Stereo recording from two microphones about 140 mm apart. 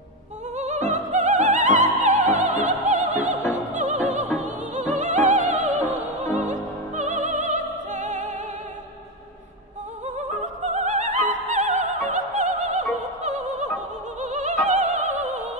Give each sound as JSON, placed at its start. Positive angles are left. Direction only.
{"t": 0.6, "sound": "opera", "side_deg": -55}
{"t": 3.5, "sound": "music", "side_deg": -60}
{"t": 4.4, "sound": "opera", "side_deg": -55}
{"t": 10.0, "sound": "opera", "side_deg": -55}